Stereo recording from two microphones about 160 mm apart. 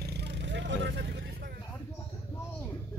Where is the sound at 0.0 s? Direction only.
90° right.